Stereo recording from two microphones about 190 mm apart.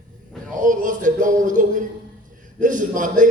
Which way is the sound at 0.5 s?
45° right (ahead or behind).